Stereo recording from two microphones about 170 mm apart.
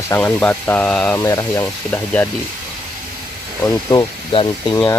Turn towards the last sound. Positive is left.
turn(degrees=15)  # may be behind; listen again after turning